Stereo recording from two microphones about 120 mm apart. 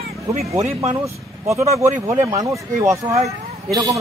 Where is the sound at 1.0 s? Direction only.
25° right (ahead or behind).